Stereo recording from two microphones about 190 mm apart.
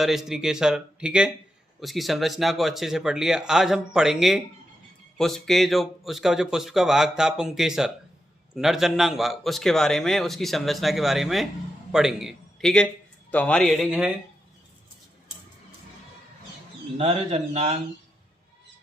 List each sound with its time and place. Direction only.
0.0 s a man's voice: centre (ahead or behind)
17.0 s a man's voice: 30° right (ahead or behind)